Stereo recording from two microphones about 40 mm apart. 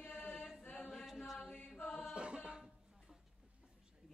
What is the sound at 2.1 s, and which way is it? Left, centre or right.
Music, right.